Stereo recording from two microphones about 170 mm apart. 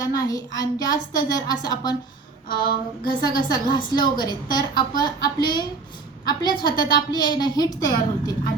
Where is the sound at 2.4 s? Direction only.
25° left (ahead or behind).